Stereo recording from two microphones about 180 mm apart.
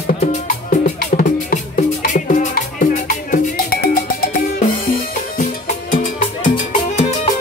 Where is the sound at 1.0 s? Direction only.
50° left (ahead or behind).